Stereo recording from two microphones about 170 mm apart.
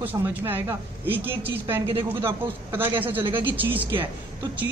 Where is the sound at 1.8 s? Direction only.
30° right (ahead or behind).